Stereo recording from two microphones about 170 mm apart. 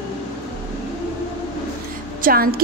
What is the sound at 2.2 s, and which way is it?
Speech, 60° right (ahead or behind).